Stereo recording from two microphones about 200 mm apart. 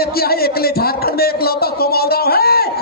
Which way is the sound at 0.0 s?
50° left (ahead or behind).